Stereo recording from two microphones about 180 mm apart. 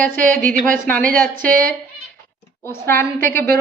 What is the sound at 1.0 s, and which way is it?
Speech, 50° right (ahead or behind).